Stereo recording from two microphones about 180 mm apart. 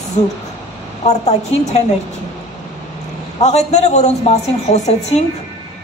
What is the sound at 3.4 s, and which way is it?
A woman's voice, 40° left (ahead or behind).